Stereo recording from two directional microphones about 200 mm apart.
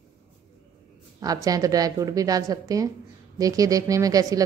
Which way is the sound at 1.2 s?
20° right (ahead or behind).